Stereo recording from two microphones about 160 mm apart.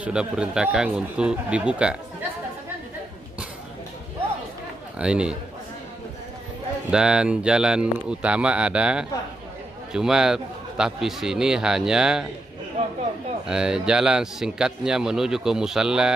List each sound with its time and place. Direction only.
0.0 s speech: 5° right (ahead or behind)
4.9 s speech: 5° right (ahead or behind)
6.9 s a man's voice: 5° right (ahead or behind)
12.8 s speech: 35° right (ahead or behind)
13.5 s a man's voice: 5° right (ahead or behind)